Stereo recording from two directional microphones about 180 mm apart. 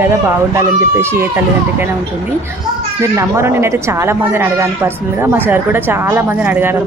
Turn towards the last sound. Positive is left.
turn(degrees=-10)  # may be behind; listen again after turning